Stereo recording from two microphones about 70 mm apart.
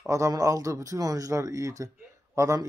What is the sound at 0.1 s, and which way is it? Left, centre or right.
Speech, right.